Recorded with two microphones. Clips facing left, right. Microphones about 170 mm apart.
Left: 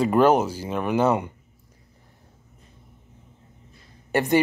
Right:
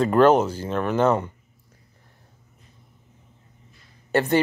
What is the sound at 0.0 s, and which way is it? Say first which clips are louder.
Speech: right 2 dB; 10° left (ahead or behind).